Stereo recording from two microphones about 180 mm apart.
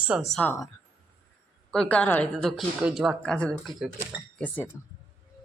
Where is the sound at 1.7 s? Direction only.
5° left (ahead or behind).